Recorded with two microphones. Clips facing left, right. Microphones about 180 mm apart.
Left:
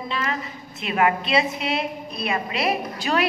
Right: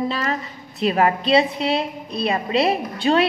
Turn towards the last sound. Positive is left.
turn(degrees=-30)  # may be behind; listen again after turning